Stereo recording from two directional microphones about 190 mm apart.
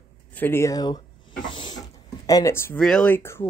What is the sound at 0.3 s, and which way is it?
Speech, 10° left (ahead or behind).